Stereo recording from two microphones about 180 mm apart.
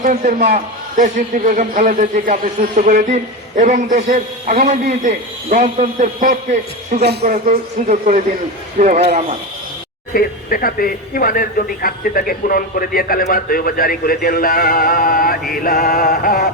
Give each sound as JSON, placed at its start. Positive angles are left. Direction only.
{"t": 0.0, "sound": "a man's voice", "side_deg": -40}
{"t": 7.0, "sound": "speech", "side_deg": -65}
{"t": 7.3, "sound": "a man's voice", "side_deg": -45}
{"t": 10.2, "sound": "a man's voice", "side_deg": 55}